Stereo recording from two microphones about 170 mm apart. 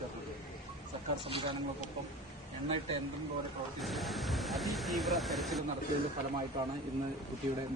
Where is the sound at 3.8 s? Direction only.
Centre (ahead or behind).